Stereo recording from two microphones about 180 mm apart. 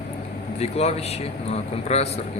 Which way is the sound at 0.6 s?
35° left (ahead or behind).